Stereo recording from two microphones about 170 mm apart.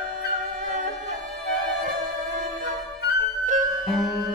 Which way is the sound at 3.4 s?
50° right (ahead or behind).